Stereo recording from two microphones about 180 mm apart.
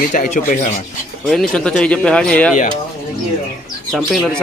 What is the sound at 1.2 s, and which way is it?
Speech, 5° left (ahead or behind).